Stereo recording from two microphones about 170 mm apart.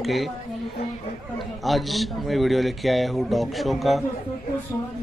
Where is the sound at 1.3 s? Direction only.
Centre (ahead or behind).